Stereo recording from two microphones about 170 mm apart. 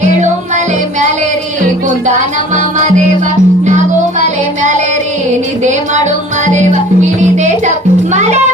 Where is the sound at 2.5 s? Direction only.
45° right (ahead or behind).